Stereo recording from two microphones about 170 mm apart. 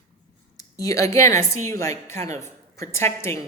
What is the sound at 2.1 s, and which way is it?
Speech, 40° right (ahead or behind).